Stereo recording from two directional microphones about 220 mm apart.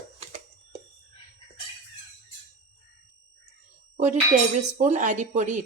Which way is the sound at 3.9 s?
35° right (ahead or behind).